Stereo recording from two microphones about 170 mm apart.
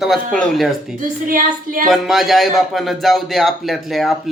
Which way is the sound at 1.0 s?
55° right (ahead or behind).